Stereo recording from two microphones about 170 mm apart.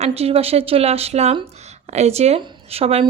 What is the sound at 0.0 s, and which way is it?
Speech, 35° right (ahead or behind).